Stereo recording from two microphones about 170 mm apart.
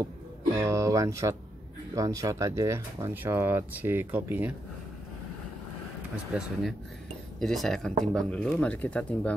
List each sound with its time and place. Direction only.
0.6 s speech: 20° right (ahead or behind)
6.3 s speech: 5° right (ahead or behind)